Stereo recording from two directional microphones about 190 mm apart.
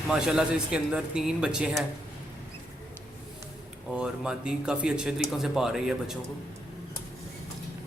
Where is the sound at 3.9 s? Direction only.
5° right (ahead or behind).